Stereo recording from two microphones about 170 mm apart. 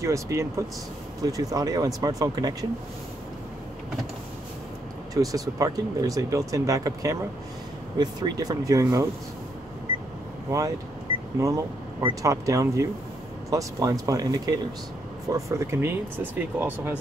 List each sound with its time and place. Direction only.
0.0 s speech: 20° right (ahead or behind)
5.1 s speech: 20° right (ahead or behind)
11.3 s speech: 20° right (ahead or behind)